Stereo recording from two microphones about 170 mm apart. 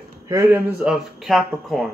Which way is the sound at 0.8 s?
5° right (ahead or behind).